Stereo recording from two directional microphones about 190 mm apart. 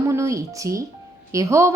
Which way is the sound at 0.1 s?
15° right (ahead or behind).